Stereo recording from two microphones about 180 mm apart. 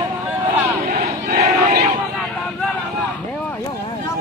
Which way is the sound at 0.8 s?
50° right (ahead or behind).